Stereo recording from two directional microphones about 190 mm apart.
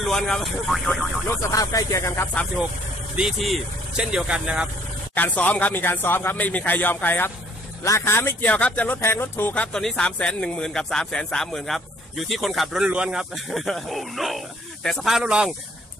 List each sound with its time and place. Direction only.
0.0 s speech: centre (ahead or behind)
1.3 s speech: 20° left (ahead or behind)
3.2 s speech: centre (ahead or behind)
5.1 s speech: 10° left (ahead or behind)